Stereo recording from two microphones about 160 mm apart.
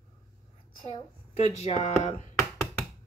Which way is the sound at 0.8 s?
40° left (ahead or behind).